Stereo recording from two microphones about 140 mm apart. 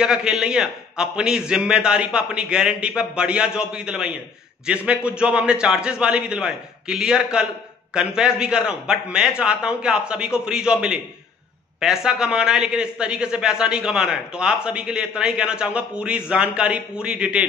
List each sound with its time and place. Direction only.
0.0 s a man's voice: 5° right (ahead or behind)